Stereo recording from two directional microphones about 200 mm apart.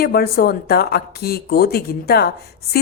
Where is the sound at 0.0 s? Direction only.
50° left (ahead or behind).